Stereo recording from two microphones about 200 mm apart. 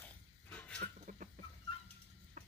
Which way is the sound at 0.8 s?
40° right (ahead or behind).